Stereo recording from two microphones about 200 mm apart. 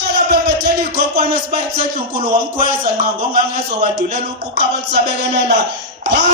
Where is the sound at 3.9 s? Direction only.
55° right (ahead or behind).